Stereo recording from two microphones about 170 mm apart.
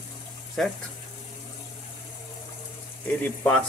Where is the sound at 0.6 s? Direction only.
Centre (ahead or behind).